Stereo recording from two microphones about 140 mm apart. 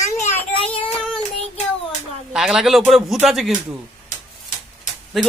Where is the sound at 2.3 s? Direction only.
5° right (ahead or behind).